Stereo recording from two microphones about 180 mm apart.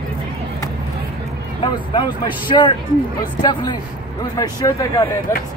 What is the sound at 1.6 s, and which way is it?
Speech, 25° left (ahead or behind).